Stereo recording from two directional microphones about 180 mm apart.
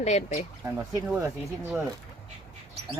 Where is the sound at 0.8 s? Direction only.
10° right (ahead or behind).